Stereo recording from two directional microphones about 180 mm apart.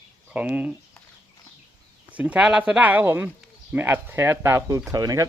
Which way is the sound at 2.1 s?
10° right (ahead or behind).